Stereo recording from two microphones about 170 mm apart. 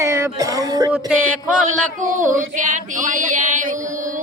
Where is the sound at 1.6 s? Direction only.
50° right (ahead or behind).